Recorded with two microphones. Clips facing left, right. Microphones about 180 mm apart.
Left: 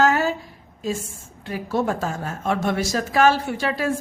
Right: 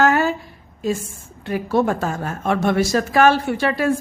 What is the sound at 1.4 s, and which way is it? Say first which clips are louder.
A woman's voice: right 4 dB; 65° right (ahead or behind).